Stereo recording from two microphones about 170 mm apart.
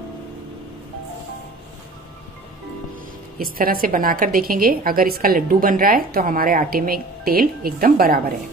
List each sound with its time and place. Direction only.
3.3 s a woman's voice: 60° right (ahead or behind)